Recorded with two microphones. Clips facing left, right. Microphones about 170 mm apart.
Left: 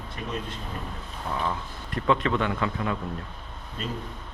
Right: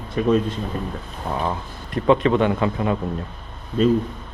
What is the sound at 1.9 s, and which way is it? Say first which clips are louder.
A man's voice: right 7 dB; 20° right (ahead or behind).